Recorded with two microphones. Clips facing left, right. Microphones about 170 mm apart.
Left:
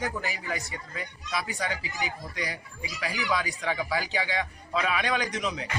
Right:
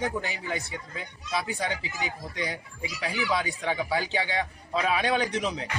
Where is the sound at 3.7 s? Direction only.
25° right (ahead or behind).